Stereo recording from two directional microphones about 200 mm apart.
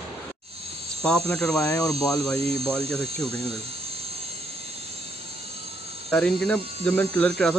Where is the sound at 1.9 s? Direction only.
5° left (ahead or behind).